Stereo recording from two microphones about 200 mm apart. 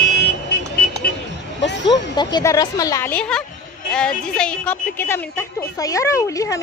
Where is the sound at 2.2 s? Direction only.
20° left (ahead or behind).